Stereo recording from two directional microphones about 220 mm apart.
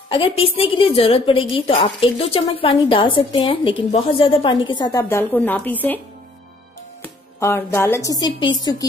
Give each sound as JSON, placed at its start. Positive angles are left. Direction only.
{"t": 0.1, "sound": "a woman's voice", "side_deg": 25}
{"t": 7.0, "sound": "speech", "side_deg": 10}